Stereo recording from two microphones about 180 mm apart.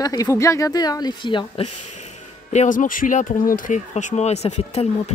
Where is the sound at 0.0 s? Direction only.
20° left (ahead or behind).